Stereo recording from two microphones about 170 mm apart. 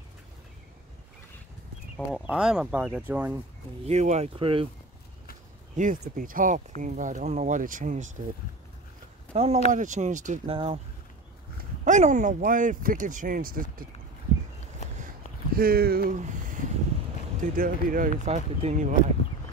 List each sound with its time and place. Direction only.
2.2 s speech: 5° right (ahead or behind)
3.8 s speech: 40° right (ahead or behind)
5.8 s speech: 50° right (ahead or behind)
9.3 s speech: 35° right (ahead or behind)
9.7 s speech: 45° right (ahead or behind)
10.5 s speech: 35° right (ahead or behind)
11.8 s speech: 45° right (ahead or behind)
15.5 s speech: 60° right (ahead or behind)
16.2 s a sound: 50° right (ahead or behind)
17.4 s speech: 55° right (ahead or behind)